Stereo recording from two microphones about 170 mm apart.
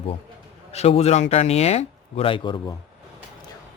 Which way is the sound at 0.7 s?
40° left (ahead or behind).